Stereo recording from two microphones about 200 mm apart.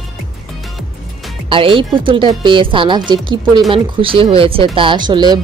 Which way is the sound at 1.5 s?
25° right (ahead or behind).